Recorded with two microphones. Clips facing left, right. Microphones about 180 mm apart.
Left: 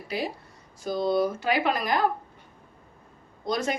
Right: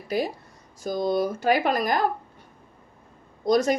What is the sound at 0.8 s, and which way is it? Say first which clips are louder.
Speech: even; 45° right (ahead or behind).